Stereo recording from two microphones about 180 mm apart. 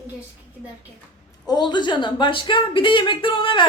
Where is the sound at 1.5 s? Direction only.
25° left (ahead or behind).